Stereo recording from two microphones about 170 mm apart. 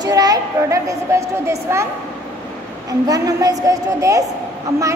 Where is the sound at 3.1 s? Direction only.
20° right (ahead or behind).